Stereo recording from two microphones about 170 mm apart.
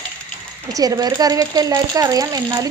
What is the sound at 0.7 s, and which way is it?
A woman's voice, 20° right (ahead or behind).